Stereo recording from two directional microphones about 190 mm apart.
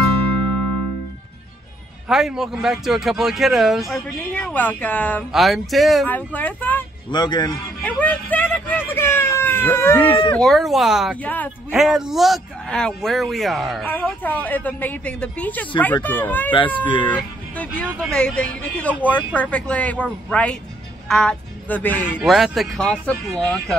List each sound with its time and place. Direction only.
2.0 s a man's voice: centre (ahead or behind)
7.1 s speech: 20° left (ahead or behind)
7.8 s a man's voice: 10° left (ahead or behind)
11.2 s speech: 10° left (ahead or behind)
11.7 s a man's voice: centre (ahead or behind)
16.8 s speech: 25° left (ahead or behind)
17.9 s a man's voice: 5° left (ahead or behind)
22.2 s a man's voice: centre (ahead or behind)